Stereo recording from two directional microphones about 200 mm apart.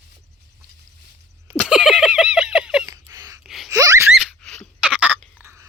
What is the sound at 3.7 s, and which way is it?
Laughter, 15° right (ahead or behind).